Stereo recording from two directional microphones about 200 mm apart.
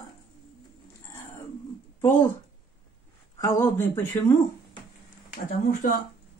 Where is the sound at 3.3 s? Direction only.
15° left (ahead or behind).